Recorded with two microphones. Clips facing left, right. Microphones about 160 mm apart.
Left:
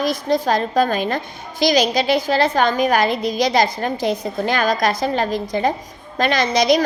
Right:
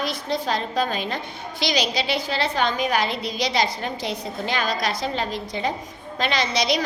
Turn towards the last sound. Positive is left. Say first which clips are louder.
# left 7 dB
turn(degrees=45)  # may be behind; listen again after turning